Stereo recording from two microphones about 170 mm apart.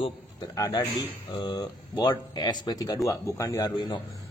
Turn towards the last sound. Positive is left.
turn(degrees=20)  # may be behind; listen again after turning